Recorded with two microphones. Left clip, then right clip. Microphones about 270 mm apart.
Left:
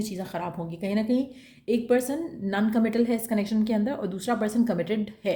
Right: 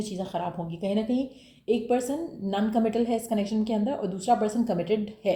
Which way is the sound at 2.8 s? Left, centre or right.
Left.